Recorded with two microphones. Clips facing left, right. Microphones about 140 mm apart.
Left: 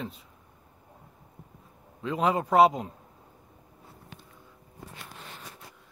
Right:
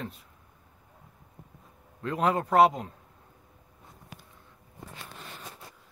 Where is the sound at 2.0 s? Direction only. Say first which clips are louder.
Even; 5° left (ahead or behind).